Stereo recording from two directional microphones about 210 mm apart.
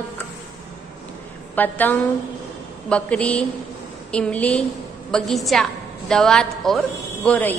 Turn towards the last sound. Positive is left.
turn(degrees=10)  # may be behind; listen again after turning